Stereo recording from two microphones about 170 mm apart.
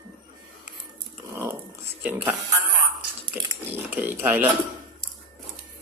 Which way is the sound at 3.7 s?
10° right (ahead or behind).